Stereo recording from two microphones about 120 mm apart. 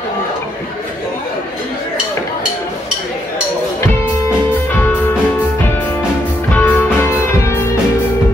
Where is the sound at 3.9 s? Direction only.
15° left (ahead or behind).